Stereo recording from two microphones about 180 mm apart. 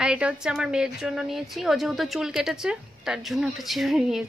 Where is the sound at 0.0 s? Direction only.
5° right (ahead or behind).